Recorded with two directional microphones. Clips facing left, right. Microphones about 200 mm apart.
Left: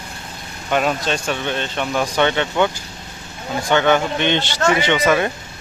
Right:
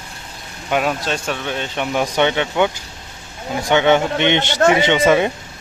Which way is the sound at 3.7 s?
20° right (ahead or behind).